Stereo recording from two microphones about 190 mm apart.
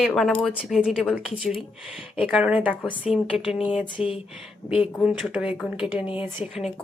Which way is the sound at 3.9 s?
30° left (ahead or behind).